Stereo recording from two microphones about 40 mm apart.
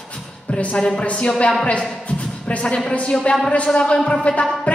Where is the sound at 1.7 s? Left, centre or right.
Left.